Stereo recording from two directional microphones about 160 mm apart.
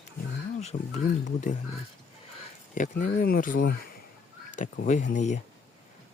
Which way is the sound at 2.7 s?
55° left (ahead or behind).